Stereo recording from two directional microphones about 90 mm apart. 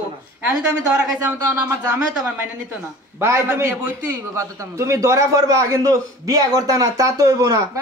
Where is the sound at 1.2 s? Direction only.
25° right (ahead or behind).